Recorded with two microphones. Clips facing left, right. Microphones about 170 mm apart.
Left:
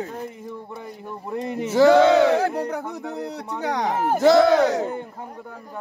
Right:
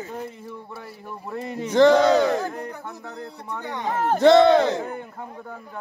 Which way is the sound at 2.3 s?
80° left.